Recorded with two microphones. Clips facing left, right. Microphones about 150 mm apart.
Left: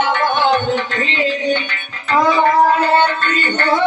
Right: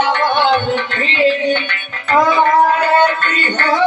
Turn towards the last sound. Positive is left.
turn(degrees=25)  # may be behind; listen again after turning